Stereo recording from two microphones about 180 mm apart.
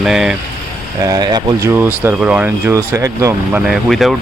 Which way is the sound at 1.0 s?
20° right (ahead or behind).